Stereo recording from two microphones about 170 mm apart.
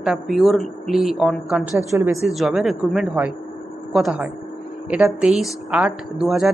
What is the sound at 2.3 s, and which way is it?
A woman's voice, centre (ahead or behind).